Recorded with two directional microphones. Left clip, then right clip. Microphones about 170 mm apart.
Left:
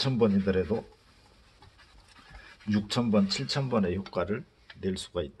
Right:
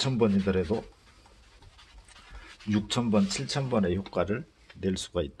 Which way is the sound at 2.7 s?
25° right (ahead or behind).